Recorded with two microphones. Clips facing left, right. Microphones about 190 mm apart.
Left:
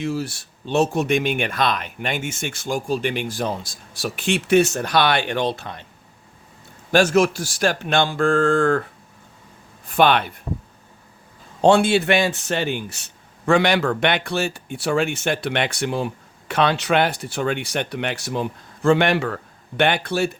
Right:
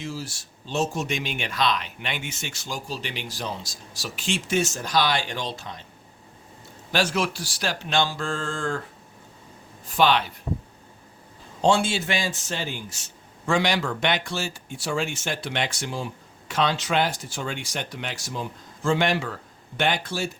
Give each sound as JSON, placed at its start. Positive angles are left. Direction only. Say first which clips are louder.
{"t": 0.0, "sound": "speech", "louder": "left 8 dB", "side_deg": 60}
{"t": 6.9, "sound": "speech", "louder": "left 8 dB", "side_deg": 45}
{"t": 9.8, "sound": "speech", "louder": "left 4 dB", "side_deg": 60}
{"t": 11.6, "sound": "speech", "louder": "left 6 dB", "side_deg": 60}